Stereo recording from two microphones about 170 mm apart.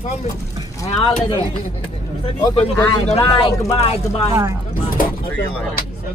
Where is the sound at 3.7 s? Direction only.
35° left (ahead or behind).